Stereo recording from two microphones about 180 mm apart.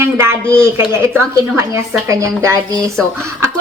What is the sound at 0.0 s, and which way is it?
A woman's voice, 15° right (ahead or behind).